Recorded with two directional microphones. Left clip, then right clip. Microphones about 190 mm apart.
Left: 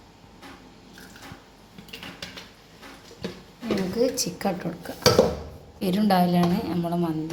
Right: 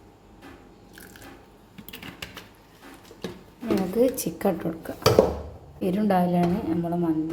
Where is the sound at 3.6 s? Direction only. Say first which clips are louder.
Right 2 dB; 50° right (ahead or behind).